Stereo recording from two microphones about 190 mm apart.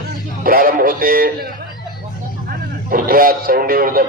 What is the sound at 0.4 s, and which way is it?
Speech, 50° right (ahead or behind).